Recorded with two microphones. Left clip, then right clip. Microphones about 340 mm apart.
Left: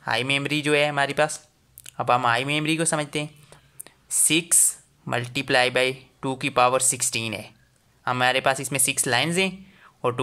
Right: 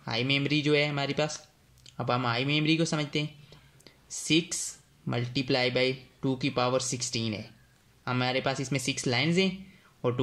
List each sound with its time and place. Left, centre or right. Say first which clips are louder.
0.0 s speech: left 5 dB; left